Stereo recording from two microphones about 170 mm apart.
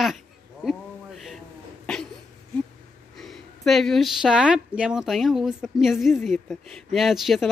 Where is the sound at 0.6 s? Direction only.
Centre (ahead or behind).